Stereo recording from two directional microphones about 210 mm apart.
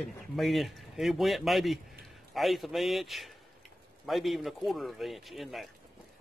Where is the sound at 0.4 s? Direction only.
Centre (ahead or behind).